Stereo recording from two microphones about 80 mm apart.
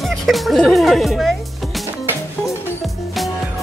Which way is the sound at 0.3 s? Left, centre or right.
Centre.